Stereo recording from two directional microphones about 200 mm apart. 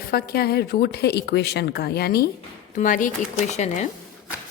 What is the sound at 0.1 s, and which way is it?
A woman's voice, 50° left (ahead or behind).